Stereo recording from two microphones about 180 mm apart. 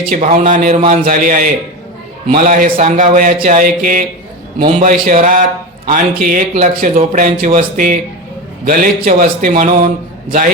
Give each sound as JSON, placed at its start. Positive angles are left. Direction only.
{"t": 0.0, "sound": "speech", "side_deg": -50}
{"t": 4.6, "sound": "speech", "side_deg": -40}